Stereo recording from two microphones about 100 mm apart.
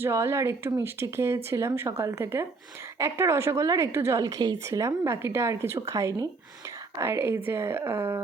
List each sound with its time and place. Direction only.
0.0 s a woman's voice: 25° right (ahead or behind)